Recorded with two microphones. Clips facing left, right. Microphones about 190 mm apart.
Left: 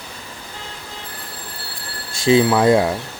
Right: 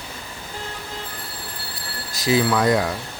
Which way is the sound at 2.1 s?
25° left (ahead or behind).